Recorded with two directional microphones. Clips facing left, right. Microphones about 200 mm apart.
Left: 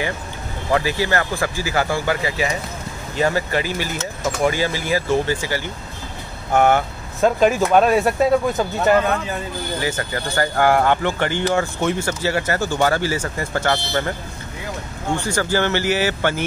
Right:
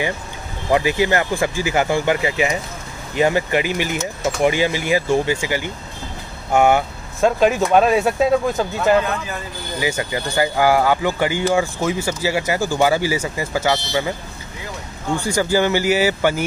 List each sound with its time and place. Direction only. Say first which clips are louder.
0.7 s speech: right 3 dB; 15° right (ahead or behind)
7.2 s speech: even; centre (ahead or behind)
9.8 s speech: right 4 dB; 10° right (ahead or behind)
15.1 s speech: right 3 dB; 10° right (ahead or behind)